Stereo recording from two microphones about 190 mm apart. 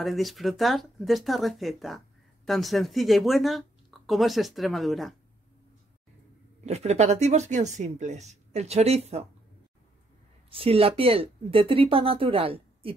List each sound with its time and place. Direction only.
0.0 s speech: centre (ahead or behind)
6.6 s speech: 35° right (ahead or behind)
10.5 s speech: 30° right (ahead or behind)